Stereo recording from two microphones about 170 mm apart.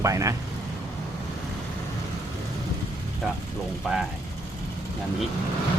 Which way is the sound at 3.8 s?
Centre (ahead or behind).